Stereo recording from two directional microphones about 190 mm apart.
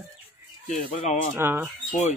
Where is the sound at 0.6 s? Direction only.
40° left (ahead or behind).